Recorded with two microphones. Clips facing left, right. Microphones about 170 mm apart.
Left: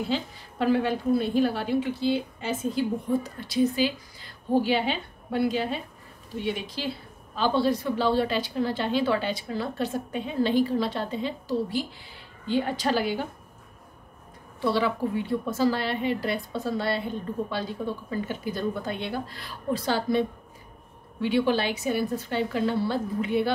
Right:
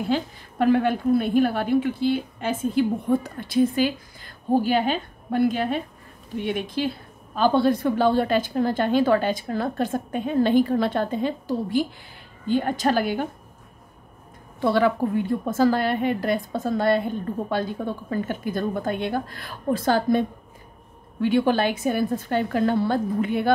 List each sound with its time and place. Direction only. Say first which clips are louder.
0.1 s a woman's voice: right 4 dB; 55° right (ahead or behind)
14.6 s a woman's voice: right 5 dB; 55° right (ahead or behind)